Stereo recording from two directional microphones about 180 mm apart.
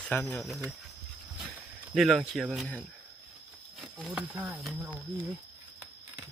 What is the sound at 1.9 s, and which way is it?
Speech, centre (ahead or behind).